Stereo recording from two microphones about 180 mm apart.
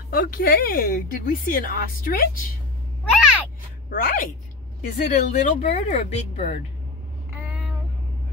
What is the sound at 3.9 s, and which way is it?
Speech, 50° left (ahead or behind).